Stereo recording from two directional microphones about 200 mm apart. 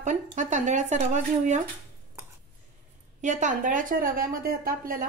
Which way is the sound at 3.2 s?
40° right (ahead or behind).